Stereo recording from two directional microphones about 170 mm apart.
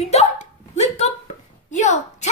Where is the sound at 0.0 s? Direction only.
40° left (ahead or behind).